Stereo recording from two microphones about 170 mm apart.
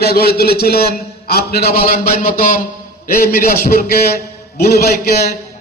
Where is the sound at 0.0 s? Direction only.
65° left (ahead or behind).